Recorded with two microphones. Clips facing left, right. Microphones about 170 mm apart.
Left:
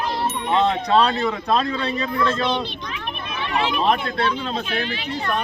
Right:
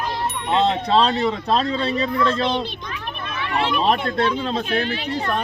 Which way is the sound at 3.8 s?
35° right (ahead or behind).